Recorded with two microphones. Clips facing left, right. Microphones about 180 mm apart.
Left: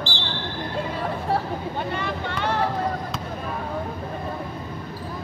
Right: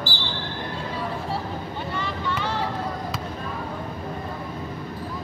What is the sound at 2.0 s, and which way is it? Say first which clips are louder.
Vehicle: left 1 dB; 60° left (ahead or behind).